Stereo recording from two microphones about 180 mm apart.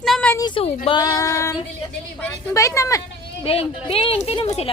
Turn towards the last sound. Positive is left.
turn(degrees=30)  # may be behind; listen again after turning